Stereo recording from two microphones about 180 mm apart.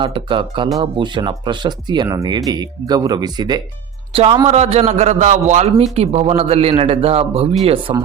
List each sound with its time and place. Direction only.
0.0 s speech: 25° right (ahead or behind)